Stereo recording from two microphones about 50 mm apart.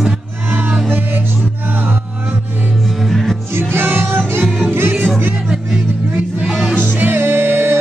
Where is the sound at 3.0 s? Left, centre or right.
Centre.